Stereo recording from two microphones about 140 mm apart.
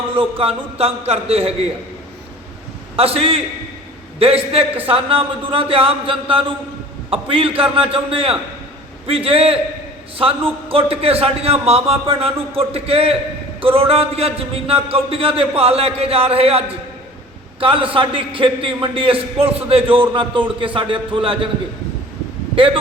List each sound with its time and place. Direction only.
0.2 s a man's voice: 40° right (ahead or behind)
2.9 s a man's voice: 45° right (ahead or behind)
22.5 s a man's voice: 40° right (ahead or behind)